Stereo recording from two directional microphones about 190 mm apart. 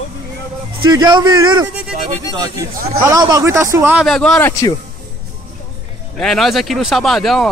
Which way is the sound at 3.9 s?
Centre (ahead or behind).